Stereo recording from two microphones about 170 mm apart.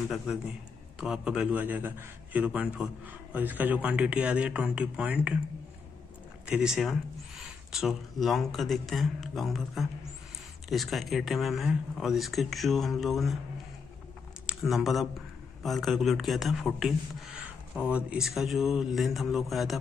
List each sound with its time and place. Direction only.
0.3 s a man's voice: 5° right (ahead or behind)
6.4 s speech: 5° right (ahead or behind)
14.4 s speech: 5° right (ahead or behind)